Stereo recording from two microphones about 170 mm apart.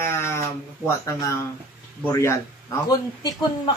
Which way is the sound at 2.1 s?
15° left (ahead or behind).